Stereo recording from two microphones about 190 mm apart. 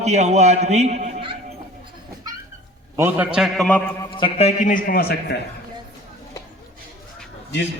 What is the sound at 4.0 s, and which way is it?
A man's voice, 25° left (ahead or behind).